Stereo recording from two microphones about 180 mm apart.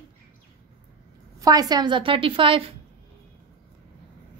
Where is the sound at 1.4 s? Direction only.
20° right (ahead or behind).